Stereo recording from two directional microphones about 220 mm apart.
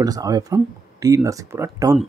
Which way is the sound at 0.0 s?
15° right (ahead or behind).